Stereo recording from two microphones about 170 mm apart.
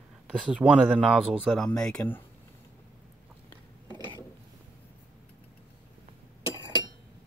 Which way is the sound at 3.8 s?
25° right (ahead or behind).